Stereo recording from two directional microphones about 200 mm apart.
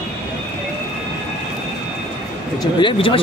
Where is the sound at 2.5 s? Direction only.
25° left (ahead or behind).